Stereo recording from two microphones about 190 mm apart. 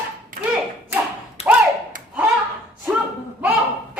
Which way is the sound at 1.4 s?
35° left (ahead or behind).